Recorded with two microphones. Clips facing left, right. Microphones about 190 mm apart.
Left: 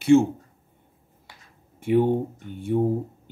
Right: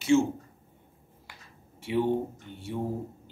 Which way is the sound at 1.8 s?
50° left (ahead or behind).